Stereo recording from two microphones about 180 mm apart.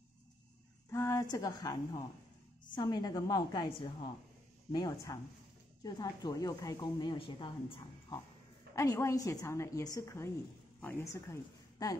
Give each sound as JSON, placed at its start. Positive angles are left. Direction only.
{"t": 0.8, "sound": "a sound", "side_deg": 15}
{"t": 1.3, "sound": "speech", "side_deg": 20}
{"t": 8.7, "sound": "a woman's voice", "side_deg": 15}